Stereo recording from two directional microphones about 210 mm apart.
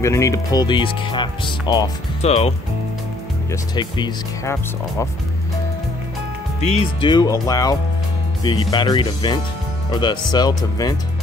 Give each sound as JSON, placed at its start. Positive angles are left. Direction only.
{"t": 0.0, "sound": "speech", "side_deg": 15}
{"t": 3.7, "sound": "speech", "side_deg": 20}
{"t": 6.6, "sound": "speech", "side_deg": 25}